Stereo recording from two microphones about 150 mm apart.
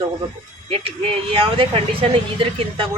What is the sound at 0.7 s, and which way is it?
Speech, 35° right (ahead or behind).